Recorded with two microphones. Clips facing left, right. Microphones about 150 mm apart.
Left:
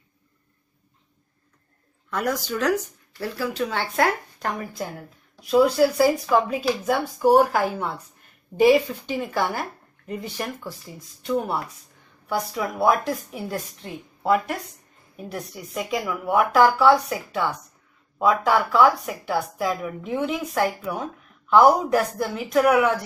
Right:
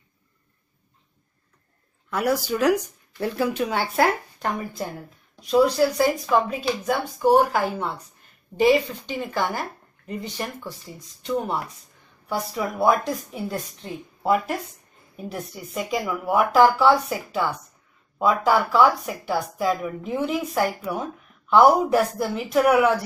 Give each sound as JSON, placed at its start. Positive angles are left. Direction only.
{"t": 2.0, "sound": "speech", "side_deg": -5}